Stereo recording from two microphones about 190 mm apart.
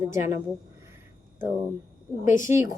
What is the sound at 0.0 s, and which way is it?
Speech, 15° right (ahead or behind).